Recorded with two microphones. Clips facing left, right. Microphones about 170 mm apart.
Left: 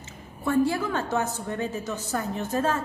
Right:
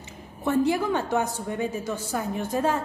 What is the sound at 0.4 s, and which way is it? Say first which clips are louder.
A woman's voice: right 1 dB; 20° right (ahead or behind).